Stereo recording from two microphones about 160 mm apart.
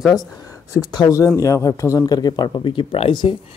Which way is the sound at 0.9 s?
20° left (ahead or behind).